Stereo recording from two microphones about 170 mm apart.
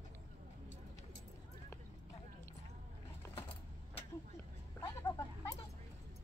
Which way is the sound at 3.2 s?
15° left (ahead or behind).